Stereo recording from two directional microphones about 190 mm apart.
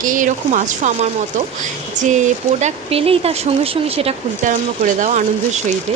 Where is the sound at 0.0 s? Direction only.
45° right (ahead or behind).